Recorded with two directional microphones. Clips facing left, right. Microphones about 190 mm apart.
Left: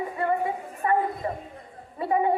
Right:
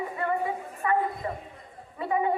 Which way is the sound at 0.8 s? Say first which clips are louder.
Left 2 dB; 30° left (ahead or behind).